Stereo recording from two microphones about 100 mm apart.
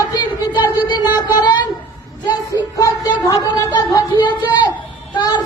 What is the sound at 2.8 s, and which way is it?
Speech, 35° left (ahead or behind).